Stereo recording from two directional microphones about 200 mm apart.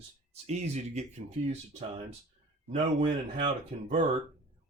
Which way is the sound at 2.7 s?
25° right (ahead or behind).